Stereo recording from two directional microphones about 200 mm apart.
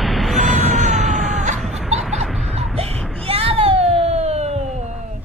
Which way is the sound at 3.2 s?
30° right (ahead or behind).